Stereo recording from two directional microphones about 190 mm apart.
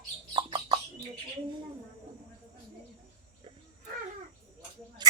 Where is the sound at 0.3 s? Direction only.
25° right (ahead or behind).